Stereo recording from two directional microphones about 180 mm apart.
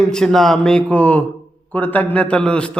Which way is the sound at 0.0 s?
Centre (ahead or behind).